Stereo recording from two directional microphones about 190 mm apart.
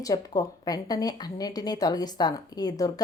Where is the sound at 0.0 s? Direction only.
20° left (ahead or behind).